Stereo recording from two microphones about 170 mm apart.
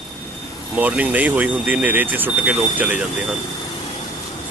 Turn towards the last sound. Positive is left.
turn(degrees=-10)  # may be behind; listen again after turning